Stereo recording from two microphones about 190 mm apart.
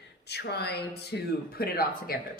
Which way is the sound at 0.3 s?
60° left (ahead or behind).